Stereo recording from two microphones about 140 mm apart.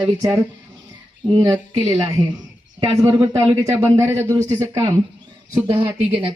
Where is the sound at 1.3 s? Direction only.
35° right (ahead or behind).